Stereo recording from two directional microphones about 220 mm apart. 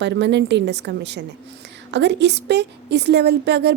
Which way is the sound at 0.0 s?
50° right (ahead or behind).